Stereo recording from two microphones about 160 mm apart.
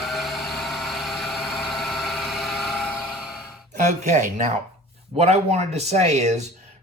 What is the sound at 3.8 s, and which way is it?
Speech, 50° right (ahead or behind).